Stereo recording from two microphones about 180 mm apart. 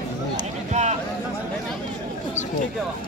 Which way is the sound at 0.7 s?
40° right (ahead or behind).